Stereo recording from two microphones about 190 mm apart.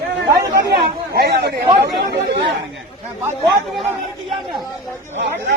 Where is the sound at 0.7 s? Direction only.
60° right (ahead or behind).